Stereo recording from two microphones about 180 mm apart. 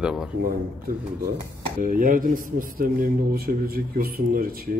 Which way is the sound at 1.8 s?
50° right (ahead or behind).